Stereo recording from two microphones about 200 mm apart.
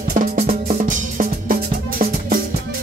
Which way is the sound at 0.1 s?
35° right (ahead or behind).